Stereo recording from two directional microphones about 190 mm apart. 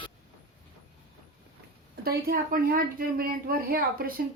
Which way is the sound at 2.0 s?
50° right (ahead or behind).